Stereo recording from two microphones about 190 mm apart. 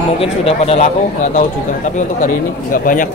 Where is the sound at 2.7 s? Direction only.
45° left (ahead or behind).